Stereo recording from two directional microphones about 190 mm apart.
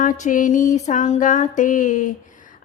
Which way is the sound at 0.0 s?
45° left (ahead or behind).